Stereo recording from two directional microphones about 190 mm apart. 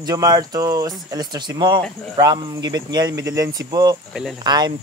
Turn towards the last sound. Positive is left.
turn(degrees=-20)  # may be behind; listen again after turning